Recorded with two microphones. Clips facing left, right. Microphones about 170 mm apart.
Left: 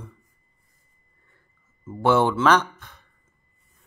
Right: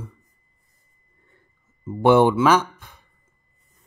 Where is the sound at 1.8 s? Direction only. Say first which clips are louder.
Right 5 dB; 15° right (ahead or behind).